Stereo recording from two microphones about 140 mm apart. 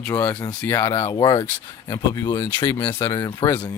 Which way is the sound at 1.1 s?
30° left (ahead or behind).